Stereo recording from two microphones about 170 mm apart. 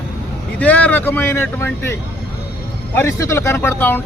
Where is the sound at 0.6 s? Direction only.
10° left (ahead or behind).